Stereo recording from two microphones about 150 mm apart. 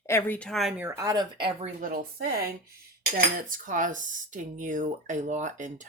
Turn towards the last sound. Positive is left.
turn(degrees=-55)  # may be behind; listen again after turning